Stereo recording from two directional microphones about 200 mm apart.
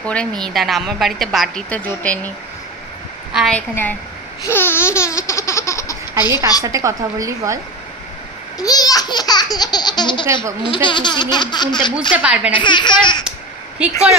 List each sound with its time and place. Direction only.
0.0 s a woman's voice: 5° left (ahead or behind)
3.3 s a woman's voice: 5° left (ahead or behind)
4.5 s laughter: 10° left (ahead or behind)
6.6 s speech: 15° right (ahead or behind)
8.5 s a sound: 20° left (ahead or behind)
10.7 s speech: 25° left (ahead or behind)
12.2 s speech: 5° right (ahead or behind)
12.5 s speech: 25° left (ahead or behind)